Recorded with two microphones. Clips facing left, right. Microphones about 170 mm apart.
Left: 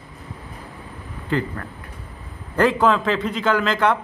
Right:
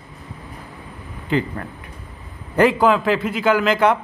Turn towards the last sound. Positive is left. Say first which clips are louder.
# right 3 dB
turn(degrees=-15)  # may be behind; listen again after turning